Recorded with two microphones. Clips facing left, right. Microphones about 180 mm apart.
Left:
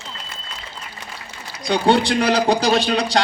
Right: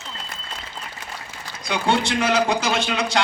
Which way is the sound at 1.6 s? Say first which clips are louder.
Left 5 dB; 35° left (ahead or behind).